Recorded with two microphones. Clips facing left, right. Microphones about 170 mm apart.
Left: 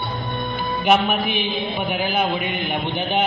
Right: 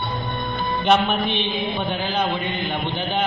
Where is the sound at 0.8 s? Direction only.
10° left (ahead or behind).